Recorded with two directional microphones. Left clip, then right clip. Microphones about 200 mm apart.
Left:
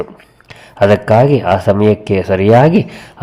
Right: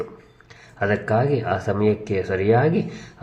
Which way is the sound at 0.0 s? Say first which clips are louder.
Left 7 dB; 45° left (ahead or behind).